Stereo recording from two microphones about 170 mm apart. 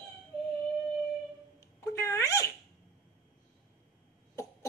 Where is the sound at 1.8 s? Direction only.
15° left (ahead or behind).